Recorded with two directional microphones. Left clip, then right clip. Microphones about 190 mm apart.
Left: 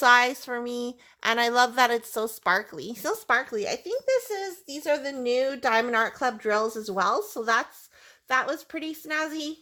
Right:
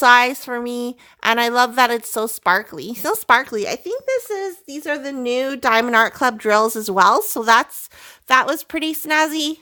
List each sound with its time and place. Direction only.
0.0 s a woman's voice: 30° right (ahead or behind); by 9.6 s 50° right (ahead or behind)